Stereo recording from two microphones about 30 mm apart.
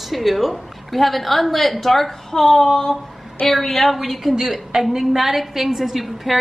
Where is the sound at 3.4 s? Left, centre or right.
Centre.